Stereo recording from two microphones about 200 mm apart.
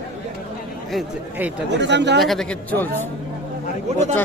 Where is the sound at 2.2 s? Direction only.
Centre (ahead or behind).